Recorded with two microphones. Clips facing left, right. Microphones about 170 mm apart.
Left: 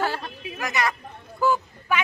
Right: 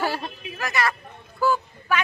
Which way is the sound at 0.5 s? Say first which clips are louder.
Even; 20° left (ahead or behind).